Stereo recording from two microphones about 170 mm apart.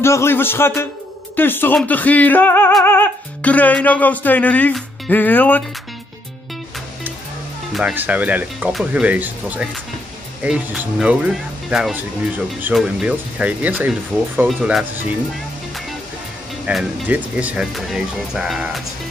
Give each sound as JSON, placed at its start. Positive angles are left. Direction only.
{"t": 0.0, "sound": "music", "side_deg": 15}
{"t": 7.7, "sound": "speech", "side_deg": -10}
{"t": 16.6, "sound": "speech", "side_deg": -10}